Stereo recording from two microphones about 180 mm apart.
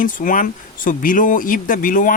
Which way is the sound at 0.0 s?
50° left (ahead or behind).